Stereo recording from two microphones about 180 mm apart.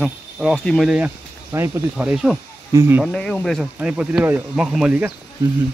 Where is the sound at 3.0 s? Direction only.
5° left (ahead or behind).